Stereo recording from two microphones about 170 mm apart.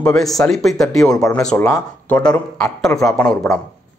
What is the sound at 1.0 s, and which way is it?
Speech, 20° left (ahead or behind).